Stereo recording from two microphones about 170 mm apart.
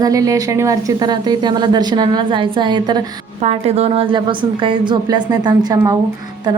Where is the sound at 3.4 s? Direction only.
40° right (ahead or behind).